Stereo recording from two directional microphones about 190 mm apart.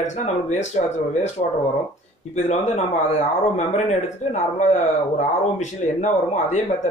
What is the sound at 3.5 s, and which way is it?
Speech, 35° left (ahead or behind).